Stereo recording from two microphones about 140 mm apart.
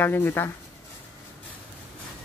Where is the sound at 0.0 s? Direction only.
15° left (ahead or behind).